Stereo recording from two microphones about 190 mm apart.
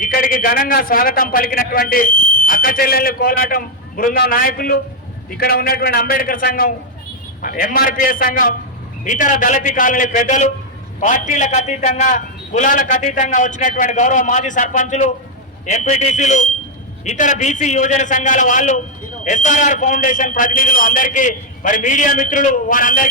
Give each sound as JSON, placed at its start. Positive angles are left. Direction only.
{"t": 0.0, "sound": "a man's voice", "side_deg": 45}